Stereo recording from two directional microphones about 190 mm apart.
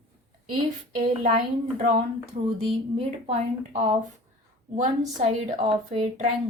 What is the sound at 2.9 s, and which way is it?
Speech, 30° right (ahead or behind).